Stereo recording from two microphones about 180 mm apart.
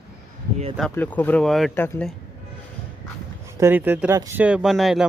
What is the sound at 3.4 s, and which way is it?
Speech, 10° right (ahead or behind).